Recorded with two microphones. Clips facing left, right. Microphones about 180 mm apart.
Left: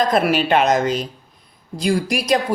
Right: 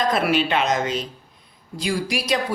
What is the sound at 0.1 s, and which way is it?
Speech, 45° left (ahead or behind).